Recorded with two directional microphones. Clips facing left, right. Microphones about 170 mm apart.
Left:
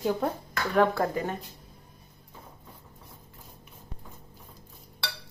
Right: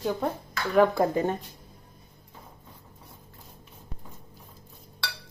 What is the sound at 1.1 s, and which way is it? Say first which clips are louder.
Cutlery: right 5 dB; 25° right (ahead or behind).